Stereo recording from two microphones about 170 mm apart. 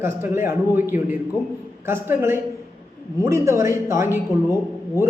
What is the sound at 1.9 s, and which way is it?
A man's voice, 15° right (ahead or behind).